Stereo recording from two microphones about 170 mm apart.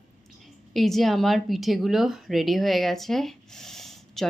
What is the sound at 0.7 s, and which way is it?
Speech, centre (ahead or behind).